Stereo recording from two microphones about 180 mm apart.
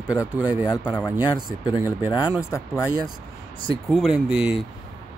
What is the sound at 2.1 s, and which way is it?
Speech, 20° left (ahead or behind).